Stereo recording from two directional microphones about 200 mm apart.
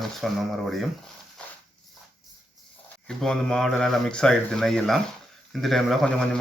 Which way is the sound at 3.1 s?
Centre (ahead or behind).